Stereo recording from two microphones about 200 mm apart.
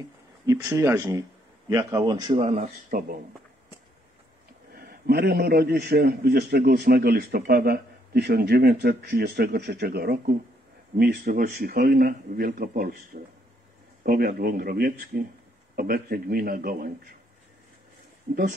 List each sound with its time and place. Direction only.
0.5 s a man's voice: 15° right (ahead or behind); by 3.2 s 40° right (ahead or behind)
4.7 s a man's voice: 50° right (ahead or behind)